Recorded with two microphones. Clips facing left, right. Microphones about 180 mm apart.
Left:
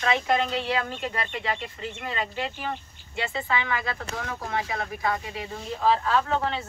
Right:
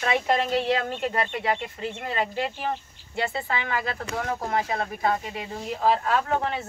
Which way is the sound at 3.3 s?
45° right (ahead or behind).